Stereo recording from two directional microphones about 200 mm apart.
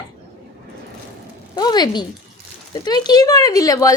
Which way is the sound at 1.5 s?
20° left (ahead or behind).